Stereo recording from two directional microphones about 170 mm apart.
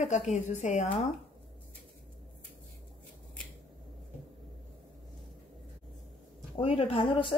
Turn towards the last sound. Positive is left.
turn(degrees=30)  # may be behind; listen again after turning